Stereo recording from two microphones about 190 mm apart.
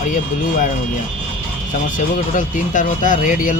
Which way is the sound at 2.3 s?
45° left (ahead or behind).